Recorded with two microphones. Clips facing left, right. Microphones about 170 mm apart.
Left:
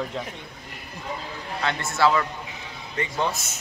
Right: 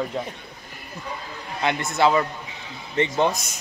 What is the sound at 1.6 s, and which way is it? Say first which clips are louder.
A man's voice: right 2 dB; 15° right (ahead or behind).